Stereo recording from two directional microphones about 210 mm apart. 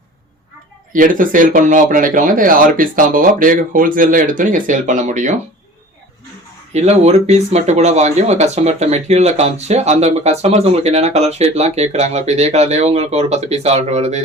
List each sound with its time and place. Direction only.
0.9 s speech: 40° right (ahead or behind)
6.7 s speech: 30° right (ahead or behind)